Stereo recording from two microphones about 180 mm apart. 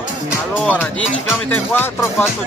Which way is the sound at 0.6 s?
10° left (ahead or behind).